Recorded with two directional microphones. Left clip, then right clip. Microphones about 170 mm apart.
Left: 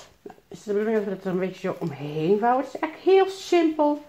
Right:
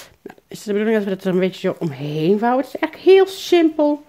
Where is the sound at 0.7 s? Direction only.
75° right (ahead or behind).